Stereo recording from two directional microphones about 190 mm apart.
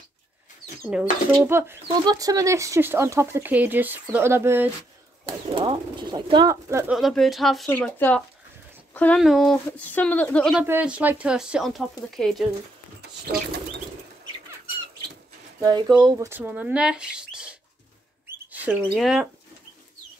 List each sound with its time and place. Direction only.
0.9 s speech: 5° right (ahead or behind)
5.5 s speech: 25° right (ahead or behind)
6.9 s speech: centre (ahead or behind)
10.6 s speech: 10° right (ahead or behind)
15.6 s speech: 20° right (ahead or behind); by 19.2 s 5° right (ahead or behind)